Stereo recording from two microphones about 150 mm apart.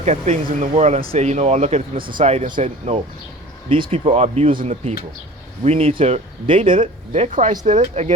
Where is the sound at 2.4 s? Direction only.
60° right (ahead or behind).